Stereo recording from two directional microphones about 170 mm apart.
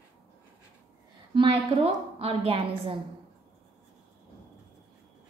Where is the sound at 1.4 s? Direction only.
35° right (ahead or behind).